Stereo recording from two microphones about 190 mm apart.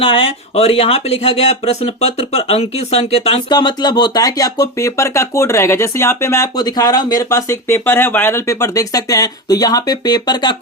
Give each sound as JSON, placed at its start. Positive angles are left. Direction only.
{"t": 0.0, "sound": "speech", "side_deg": 30}